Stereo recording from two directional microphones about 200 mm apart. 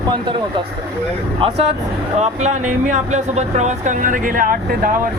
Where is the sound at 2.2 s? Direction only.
35° right (ahead or behind).